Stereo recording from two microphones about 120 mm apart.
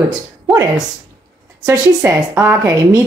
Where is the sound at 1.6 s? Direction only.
25° right (ahead or behind).